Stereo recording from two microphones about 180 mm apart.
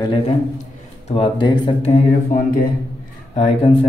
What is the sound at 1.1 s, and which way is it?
Speech, 30° left (ahead or behind).